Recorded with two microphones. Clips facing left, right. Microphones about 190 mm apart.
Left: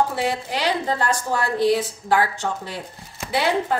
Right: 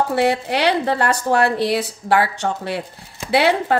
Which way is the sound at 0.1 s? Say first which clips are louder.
Right 6 dB; 70° right (ahead or behind).